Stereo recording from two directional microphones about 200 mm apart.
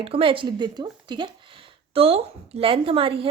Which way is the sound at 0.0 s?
25° right (ahead or behind).